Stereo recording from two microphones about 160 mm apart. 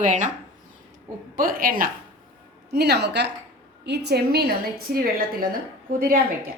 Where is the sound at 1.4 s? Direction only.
60° right (ahead or behind).